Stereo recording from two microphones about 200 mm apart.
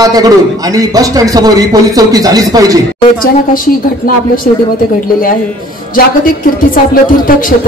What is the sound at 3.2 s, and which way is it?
Speech, 45° left (ahead or behind).